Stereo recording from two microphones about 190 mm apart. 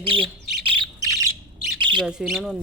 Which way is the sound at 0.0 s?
25° right (ahead or behind).